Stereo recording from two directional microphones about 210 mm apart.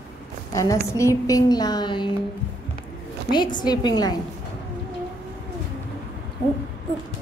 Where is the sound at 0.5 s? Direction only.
15° left (ahead or behind).